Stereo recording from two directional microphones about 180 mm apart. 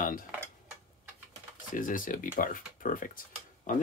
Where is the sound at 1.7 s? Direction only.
50° left (ahead or behind).